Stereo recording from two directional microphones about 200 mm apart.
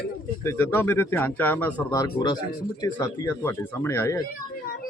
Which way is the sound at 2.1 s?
20° left (ahead or behind).